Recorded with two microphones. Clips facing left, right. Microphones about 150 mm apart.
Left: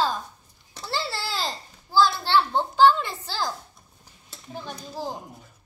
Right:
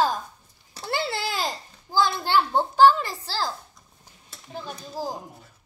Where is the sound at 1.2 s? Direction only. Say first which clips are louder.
Right 2 dB; 15° right (ahead or behind).